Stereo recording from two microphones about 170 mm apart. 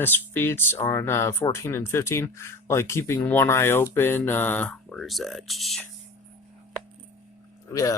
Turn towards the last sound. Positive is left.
turn(degrees=20)  # may be behind; listen again after turning